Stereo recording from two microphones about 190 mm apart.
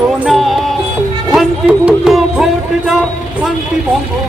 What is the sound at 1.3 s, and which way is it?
Speech, 5° right (ahead or behind).